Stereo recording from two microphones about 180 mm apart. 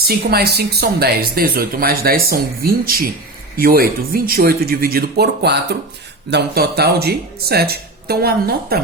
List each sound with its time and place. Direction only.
0.1 s speech: 60° right (ahead or behind)